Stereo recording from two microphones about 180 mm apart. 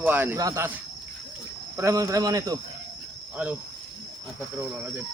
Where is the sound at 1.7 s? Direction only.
15° right (ahead or behind).